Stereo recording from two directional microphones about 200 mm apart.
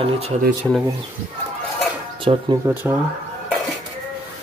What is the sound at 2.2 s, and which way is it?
Speech, 25° right (ahead or behind).